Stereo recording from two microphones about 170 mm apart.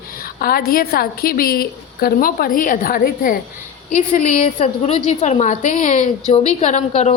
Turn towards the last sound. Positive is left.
turn(degrees=40)  # may be behind; listen again after turning